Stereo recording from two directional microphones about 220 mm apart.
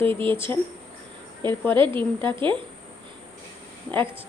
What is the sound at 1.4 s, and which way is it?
A woman's voice, 20° right (ahead or behind).